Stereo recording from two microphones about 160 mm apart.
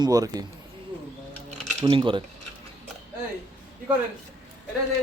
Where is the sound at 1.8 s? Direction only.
30° right (ahead or behind).